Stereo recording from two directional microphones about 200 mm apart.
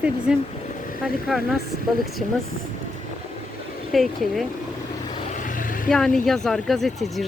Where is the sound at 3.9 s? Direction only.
Centre (ahead or behind).